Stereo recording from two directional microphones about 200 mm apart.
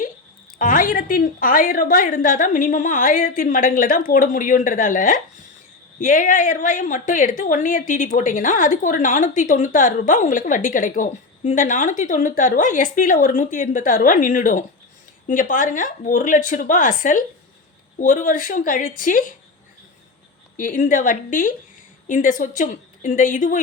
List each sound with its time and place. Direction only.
0.6 s a woman's voice: 40° left (ahead or behind)
20.6 s a woman's voice: 40° left (ahead or behind)